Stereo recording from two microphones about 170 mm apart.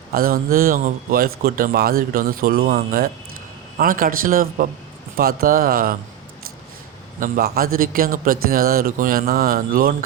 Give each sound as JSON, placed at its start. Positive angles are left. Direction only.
{"t": 0.1, "sound": "a man's voice", "side_deg": -60}
{"t": 7.2, "sound": "a man's voice", "side_deg": -65}